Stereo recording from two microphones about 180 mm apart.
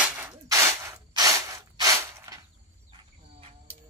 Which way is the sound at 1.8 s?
20° right (ahead or behind).